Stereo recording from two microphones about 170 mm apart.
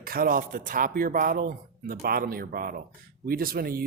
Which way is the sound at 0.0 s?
60° right (ahead or behind).